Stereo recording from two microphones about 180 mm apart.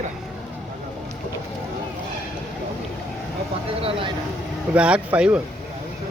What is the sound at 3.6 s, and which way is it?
Speech, 30° right (ahead or behind).